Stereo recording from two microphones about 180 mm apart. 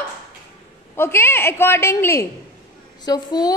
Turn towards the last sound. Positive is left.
turn(degrees=20)  # may be behind; listen again after turning